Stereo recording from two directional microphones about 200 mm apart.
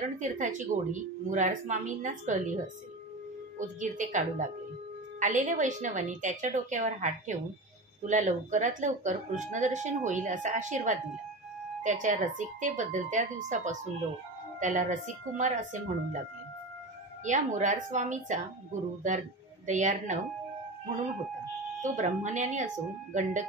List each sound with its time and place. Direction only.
0.2 s speech: 40° right (ahead or behind)
17.2 s speech: 40° right (ahead or behind)
21.8 s speech: 35° right (ahead or behind)